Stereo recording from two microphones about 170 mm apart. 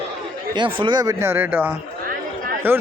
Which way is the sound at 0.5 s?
25° right (ahead or behind).